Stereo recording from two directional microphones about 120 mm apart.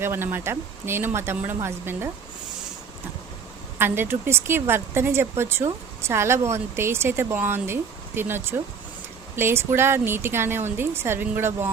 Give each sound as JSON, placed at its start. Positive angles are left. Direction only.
{"t": 0.0, "sound": "speech", "side_deg": -20}
{"t": 3.8, "sound": "speech", "side_deg": -20}